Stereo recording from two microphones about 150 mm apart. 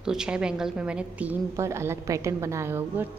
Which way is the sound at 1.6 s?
20° right (ahead or behind).